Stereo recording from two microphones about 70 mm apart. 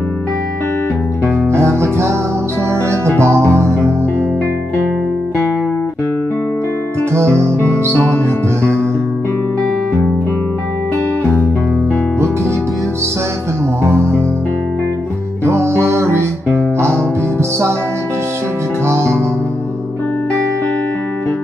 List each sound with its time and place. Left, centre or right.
1.5 s music: right
7.1 s music: right
13.8 s music: right
15.4 s music: right
18.9 s music: right